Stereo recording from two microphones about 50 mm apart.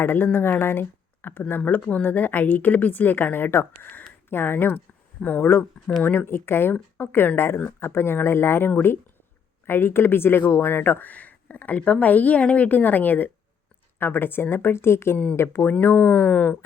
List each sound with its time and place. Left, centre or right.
0.0 s speech: left
5.2 s speech: left
6.2 s a woman's voice: left
11.1 s a woman's voice: left
16.2 s speech: centre